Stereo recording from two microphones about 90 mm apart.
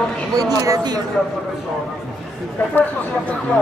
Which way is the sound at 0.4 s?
40° right (ahead or behind).